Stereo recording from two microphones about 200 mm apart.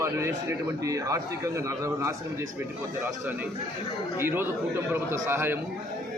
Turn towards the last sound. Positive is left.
turn(degrees=-10)  # may be behind; listen again after turning